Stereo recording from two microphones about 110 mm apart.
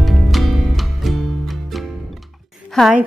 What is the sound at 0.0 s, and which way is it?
Music, centre (ahead or behind).